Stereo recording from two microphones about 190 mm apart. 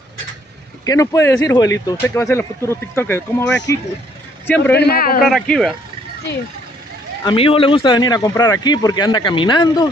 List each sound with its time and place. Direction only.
0.8 s speech: 15° left (ahead or behind)
4.7 s a man's voice: 55° left (ahead or behind)
5.2 s speech: centre (ahead or behind)
7.2 s speech: 30° left (ahead or behind)